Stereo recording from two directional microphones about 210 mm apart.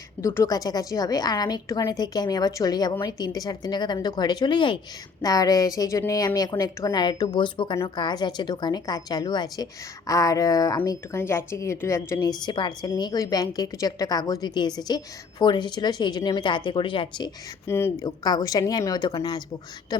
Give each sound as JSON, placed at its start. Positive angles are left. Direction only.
{"t": 0.2, "sound": "a woman's voice", "side_deg": 15}